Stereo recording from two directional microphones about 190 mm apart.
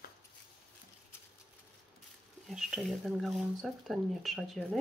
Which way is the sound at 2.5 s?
Centre (ahead or behind).